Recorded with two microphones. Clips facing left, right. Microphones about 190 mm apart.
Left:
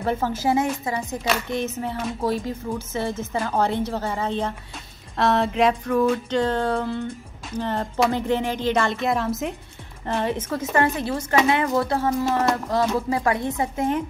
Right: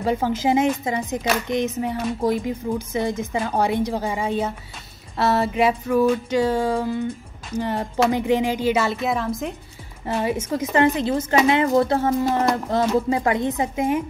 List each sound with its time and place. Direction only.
0.0 s speech: 15° right (ahead or behind); by 9.6 s centre (ahead or behind)
10.0 s a woman's voice: 10° right (ahead or behind)